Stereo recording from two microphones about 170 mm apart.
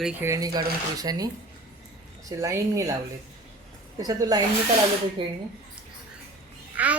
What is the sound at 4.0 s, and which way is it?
A woman's voice, 20° right (ahead or behind).